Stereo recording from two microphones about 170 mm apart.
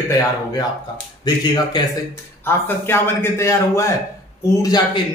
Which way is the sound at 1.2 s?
25° left (ahead or behind).